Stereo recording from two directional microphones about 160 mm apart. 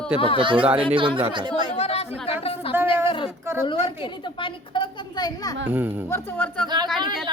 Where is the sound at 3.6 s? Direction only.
30° left (ahead or behind).